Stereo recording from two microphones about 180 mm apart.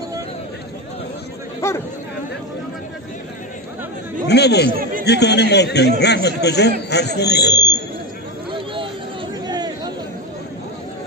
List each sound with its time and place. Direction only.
1.6 s chatter: 15° left (ahead or behind)
4.3 s chatter: 65° left (ahead or behind)
5.0 s speech: 70° left (ahead or behind)
9.5 s chatter: 20° right (ahead or behind)